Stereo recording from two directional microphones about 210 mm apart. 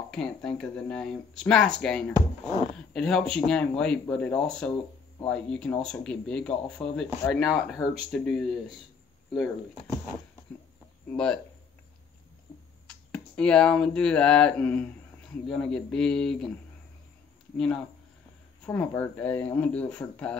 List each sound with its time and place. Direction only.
0.1 s speech: 5° left (ahead or behind)
2.1 s speech: 15° left (ahead or behind)
2.9 s speech: centre (ahead or behind)
12.8 s speech: 5° left (ahead or behind)
18.7 s speech: 10° left (ahead or behind)